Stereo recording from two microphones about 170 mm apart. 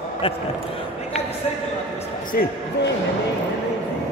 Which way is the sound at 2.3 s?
60° left (ahead or behind).